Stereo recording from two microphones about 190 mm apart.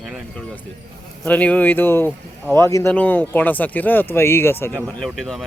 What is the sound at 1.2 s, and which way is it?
Speech, 5° left (ahead or behind).